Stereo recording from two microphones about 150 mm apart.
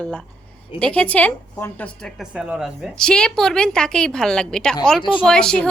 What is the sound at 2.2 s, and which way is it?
A woman's voice, 5° right (ahead or behind).